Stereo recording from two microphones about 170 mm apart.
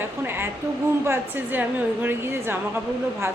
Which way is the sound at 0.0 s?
15° right (ahead or behind).